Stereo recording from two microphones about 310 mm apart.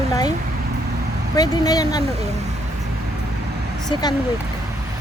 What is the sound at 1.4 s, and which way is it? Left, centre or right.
Speech, centre.